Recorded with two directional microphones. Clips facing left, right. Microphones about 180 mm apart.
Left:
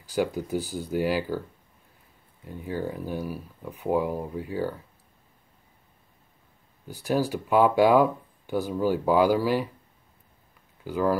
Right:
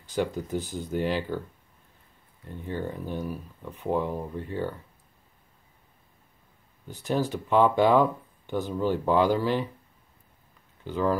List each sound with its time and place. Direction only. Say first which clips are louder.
0.1 s speech: left 2 dB; 10° left (ahead or behind)
2.4 s speech: left 2 dB; 5° left (ahead or behind)
6.9 s speech: left 2 dB; 10° left (ahead or behind)
10.8 s speech: left 1 dB; 5° left (ahead or behind)